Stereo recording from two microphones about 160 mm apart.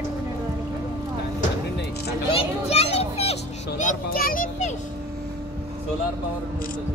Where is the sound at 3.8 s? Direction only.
60° left (ahead or behind).